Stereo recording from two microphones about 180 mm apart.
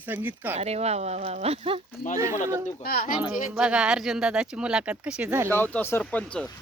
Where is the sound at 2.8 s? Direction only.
55° left (ahead or behind).